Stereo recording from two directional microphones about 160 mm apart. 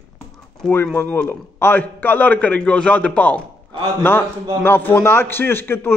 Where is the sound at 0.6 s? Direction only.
5° left (ahead or behind).